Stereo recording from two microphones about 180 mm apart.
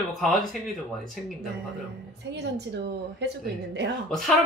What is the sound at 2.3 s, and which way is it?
A woman's voice, 70° right (ahead or behind).